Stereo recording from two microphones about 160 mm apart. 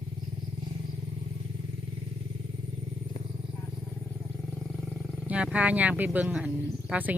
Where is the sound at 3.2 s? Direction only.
25° left (ahead or behind).